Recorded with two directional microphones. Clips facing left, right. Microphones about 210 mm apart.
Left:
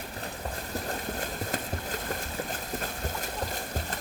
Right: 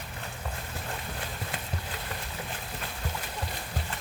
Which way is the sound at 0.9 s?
45° left (ahead or behind).